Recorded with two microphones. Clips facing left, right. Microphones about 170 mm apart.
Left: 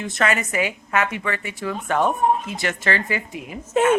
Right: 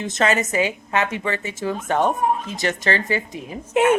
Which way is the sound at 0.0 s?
20° right (ahead or behind).